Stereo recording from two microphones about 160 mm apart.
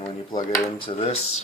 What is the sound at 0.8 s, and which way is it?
Speech, 35° left (ahead or behind).